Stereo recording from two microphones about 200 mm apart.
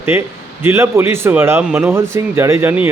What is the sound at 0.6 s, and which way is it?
A man's voice, 10° right (ahead or behind).